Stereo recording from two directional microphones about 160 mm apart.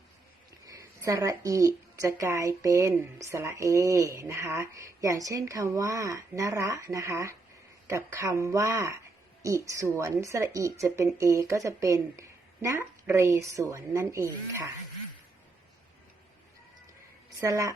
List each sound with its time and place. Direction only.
0.6 s a woman's voice: 20° right (ahead or behind)
17.4 s a woman's voice: 20° right (ahead or behind)